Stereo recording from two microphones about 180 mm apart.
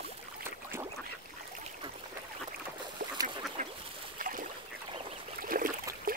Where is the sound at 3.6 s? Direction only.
40° right (ahead or behind).